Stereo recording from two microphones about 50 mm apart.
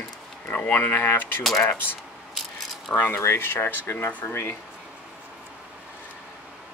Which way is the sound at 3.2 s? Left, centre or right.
Left.